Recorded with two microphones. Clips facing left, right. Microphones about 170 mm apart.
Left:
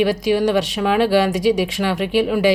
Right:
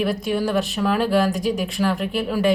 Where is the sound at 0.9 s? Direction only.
80° left.